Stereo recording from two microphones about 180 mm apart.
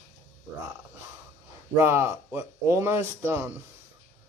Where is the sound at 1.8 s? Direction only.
15° right (ahead or behind).